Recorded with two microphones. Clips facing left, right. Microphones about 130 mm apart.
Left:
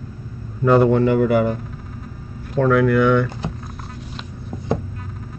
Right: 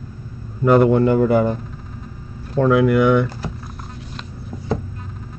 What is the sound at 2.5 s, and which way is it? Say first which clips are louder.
Speech: right 1 dB; 20° right (ahead or behind).